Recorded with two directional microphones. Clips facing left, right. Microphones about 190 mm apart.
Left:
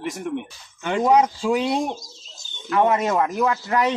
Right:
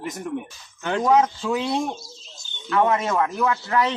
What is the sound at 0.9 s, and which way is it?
A man's voice, 15° left (ahead or behind).